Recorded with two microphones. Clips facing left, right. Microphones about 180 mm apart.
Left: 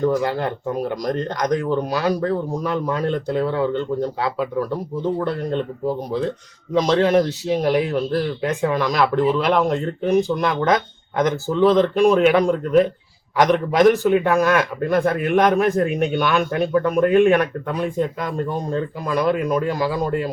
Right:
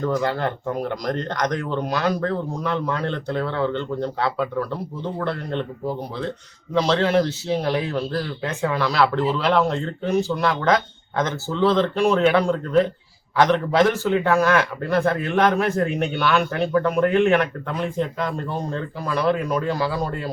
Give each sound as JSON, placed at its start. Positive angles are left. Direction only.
{"t": 0.0, "sound": "a man's voice", "side_deg": 15}